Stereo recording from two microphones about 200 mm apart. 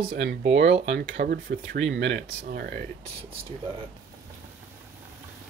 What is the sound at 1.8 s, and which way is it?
Speech, 65° right (ahead or behind).